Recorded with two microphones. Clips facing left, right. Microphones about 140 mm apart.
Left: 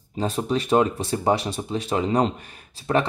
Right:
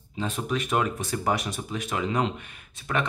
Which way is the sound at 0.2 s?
30° left (ahead or behind).